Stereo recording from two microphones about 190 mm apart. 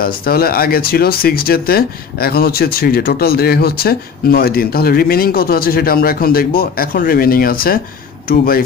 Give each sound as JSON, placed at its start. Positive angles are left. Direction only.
{"t": 0.0, "sound": "speech", "side_deg": 50}